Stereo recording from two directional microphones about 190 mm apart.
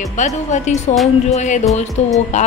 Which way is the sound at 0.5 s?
40° left (ahead or behind).